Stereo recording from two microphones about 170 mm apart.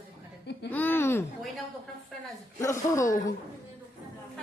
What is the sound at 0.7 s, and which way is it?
Speech, 10° left (ahead or behind).